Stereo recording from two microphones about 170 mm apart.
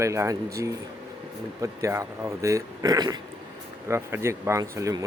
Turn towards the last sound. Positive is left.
turn(degrees=-20)  # may be behind; listen again after turning